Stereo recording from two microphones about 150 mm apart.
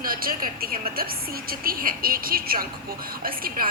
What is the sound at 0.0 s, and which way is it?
A woman's voice, 75° right (ahead or behind).